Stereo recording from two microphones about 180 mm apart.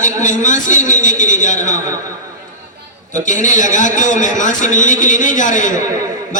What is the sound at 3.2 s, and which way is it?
A woman's voice, 45° left (ahead or behind).